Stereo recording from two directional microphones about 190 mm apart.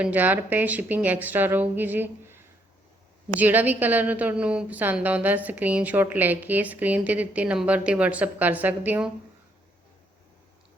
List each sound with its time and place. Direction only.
0.0 s a woman's voice: 10° right (ahead or behind)
3.4 s a woman's voice: 10° right (ahead or behind)